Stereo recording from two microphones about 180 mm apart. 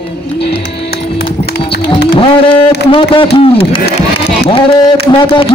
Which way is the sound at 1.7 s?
70° left (ahead or behind).